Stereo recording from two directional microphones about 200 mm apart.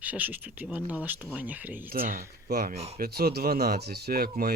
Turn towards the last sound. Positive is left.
turn(degrees=-50)  # may be behind; listen again after turning